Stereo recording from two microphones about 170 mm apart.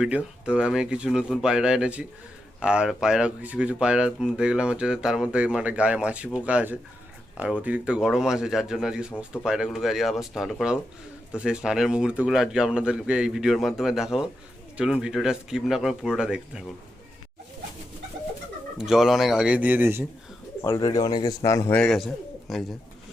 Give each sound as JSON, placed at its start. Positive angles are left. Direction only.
{"t": 0.0, "sound": "speech", "side_deg": -5}
{"t": 18.8, "sound": "speech", "side_deg": 0}
{"t": 20.7, "sound": "speech", "side_deg": 25}
{"t": 21.8, "sound": "speech", "side_deg": 0}